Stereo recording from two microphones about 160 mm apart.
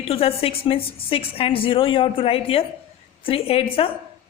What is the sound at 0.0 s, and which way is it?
A woman's voice, 40° left (ahead or behind).